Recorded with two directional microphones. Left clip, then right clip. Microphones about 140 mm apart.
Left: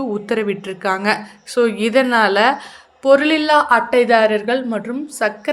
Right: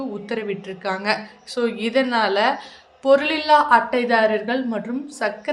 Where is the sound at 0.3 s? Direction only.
40° left (ahead or behind).